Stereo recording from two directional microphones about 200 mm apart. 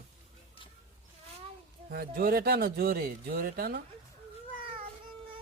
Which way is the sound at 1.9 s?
50° right (ahead or behind).